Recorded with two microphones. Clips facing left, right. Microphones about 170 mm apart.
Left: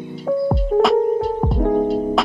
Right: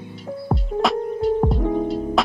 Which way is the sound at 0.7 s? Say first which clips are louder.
Left 8 dB; 55° left (ahead or behind).